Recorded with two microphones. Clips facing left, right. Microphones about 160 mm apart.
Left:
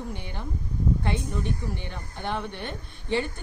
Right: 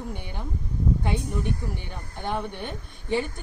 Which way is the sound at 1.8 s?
15° right (ahead or behind).